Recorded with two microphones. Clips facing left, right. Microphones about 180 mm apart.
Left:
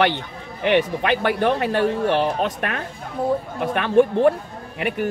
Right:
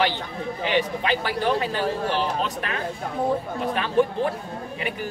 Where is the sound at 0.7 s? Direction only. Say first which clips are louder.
Left 5 dB; 60° left (ahead or behind).